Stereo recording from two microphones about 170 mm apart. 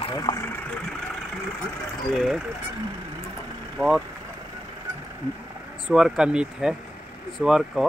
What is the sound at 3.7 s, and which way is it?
Speech, 5° right (ahead or behind).